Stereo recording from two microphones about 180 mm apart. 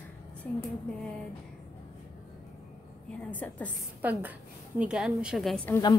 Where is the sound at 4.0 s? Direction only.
10° right (ahead or behind).